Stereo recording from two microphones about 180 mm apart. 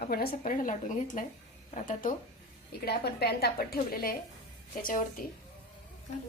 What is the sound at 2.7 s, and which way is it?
A woman's voice, 65° left (ahead or behind).